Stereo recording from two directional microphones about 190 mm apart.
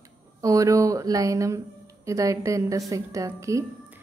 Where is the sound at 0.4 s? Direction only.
15° right (ahead or behind).